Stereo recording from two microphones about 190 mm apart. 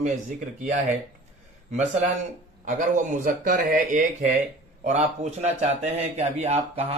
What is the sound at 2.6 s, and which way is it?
Speech, 45° right (ahead or behind).